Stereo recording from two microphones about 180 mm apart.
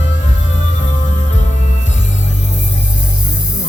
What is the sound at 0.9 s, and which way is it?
Music, 40° left (ahead or behind).